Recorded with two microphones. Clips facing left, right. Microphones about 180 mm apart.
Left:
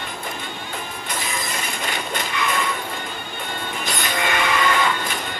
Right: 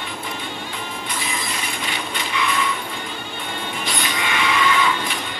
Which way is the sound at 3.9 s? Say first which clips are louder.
Left 2 dB; 45° left (ahead or behind).